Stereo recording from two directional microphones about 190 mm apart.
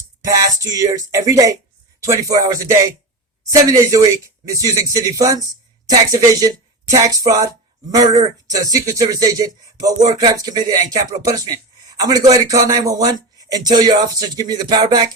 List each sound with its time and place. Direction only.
0.3 s a man's voice: 15° right (ahead or behind)